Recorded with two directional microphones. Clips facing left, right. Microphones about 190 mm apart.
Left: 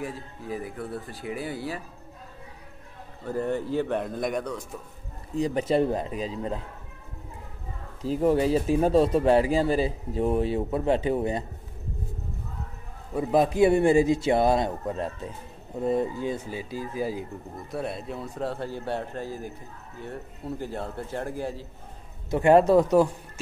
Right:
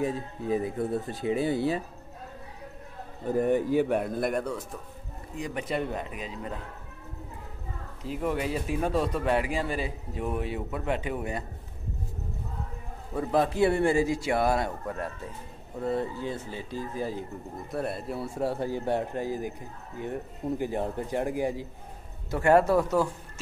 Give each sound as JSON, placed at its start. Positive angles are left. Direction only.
{"t": 0.0, "sound": "speech", "side_deg": -20}
{"t": 3.3, "sound": "a man's voice", "side_deg": -15}
{"t": 5.3, "sound": "speech", "side_deg": 30}
{"t": 8.0, "sound": "speech", "side_deg": 35}
{"t": 13.1, "sound": "a man's voice", "side_deg": 15}
{"t": 17.6, "sound": "a man's voice", "side_deg": 0}
{"t": 22.3, "sound": "a man's voice", "side_deg": 20}